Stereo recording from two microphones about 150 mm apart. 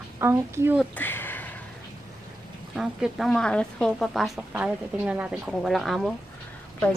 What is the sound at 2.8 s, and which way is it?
A woman's voice, centre (ahead or behind).